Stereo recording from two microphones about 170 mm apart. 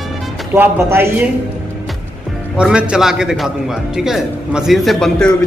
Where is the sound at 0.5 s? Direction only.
15° right (ahead or behind).